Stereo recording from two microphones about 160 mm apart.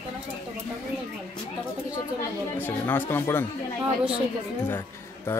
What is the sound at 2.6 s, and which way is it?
Speech, 10° left (ahead or behind).